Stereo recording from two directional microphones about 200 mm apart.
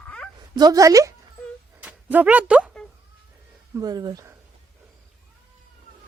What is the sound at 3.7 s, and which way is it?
Speech, 20° right (ahead or behind).